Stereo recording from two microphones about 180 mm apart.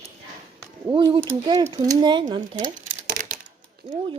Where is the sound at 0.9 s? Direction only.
20° right (ahead or behind).